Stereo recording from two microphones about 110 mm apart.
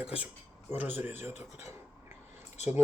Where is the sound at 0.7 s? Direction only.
20° right (ahead or behind).